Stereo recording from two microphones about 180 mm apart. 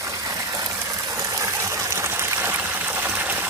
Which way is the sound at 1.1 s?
20° right (ahead or behind).